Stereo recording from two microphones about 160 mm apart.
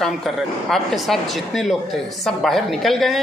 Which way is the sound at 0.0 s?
Centre (ahead or behind).